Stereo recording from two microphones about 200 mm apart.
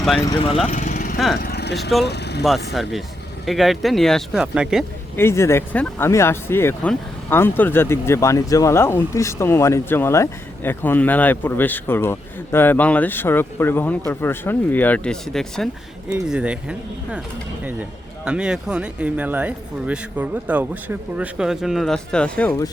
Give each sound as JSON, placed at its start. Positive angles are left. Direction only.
{"t": 0.3, "sound": "speech", "side_deg": 30}
{"t": 0.7, "sound": "lawn mower", "side_deg": 40}
{"t": 1.4, "sound": "vehicle", "side_deg": 50}
{"t": 2.0, "sound": "speech", "side_deg": 55}
{"t": 2.8, "sound": "speech", "side_deg": 0}
{"t": 5.1, "sound": "speech", "side_deg": 15}